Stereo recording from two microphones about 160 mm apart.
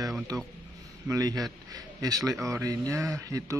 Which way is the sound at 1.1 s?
20° right (ahead or behind).